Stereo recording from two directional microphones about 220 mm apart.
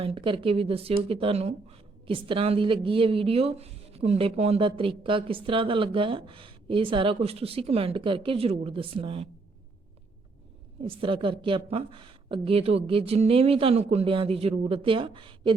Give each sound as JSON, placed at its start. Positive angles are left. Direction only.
{"t": 0.0, "sound": "speech", "side_deg": -25}
{"t": 10.8, "sound": "speech", "side_deg": -25}